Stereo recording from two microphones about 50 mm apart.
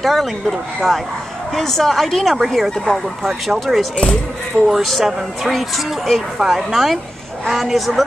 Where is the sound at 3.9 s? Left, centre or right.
Centre.